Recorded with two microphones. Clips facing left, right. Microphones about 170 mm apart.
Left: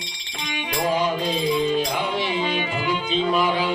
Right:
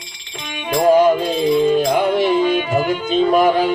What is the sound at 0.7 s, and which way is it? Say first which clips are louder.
Music: right 11 dB; 45° right (ahead or behind).